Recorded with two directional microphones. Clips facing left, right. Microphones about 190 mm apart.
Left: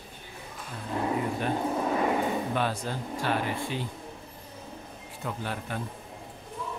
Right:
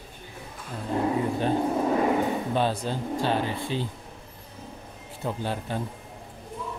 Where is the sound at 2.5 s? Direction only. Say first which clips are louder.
Right 4 dB; 25° right (ahead or behind).